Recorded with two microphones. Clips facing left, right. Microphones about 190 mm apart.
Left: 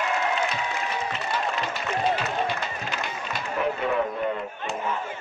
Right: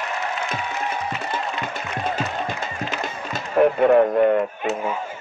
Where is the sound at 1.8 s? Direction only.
45° right (ahead or behind).